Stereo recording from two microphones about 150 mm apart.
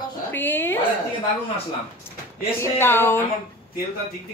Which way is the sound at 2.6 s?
15° left (ahead or behind).